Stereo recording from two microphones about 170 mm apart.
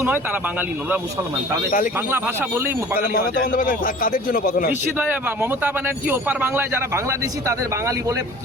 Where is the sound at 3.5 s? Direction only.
55° left (ahead or behind).